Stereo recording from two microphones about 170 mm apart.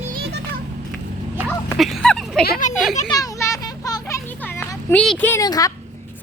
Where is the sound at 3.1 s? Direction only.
20° left (ahead or behind).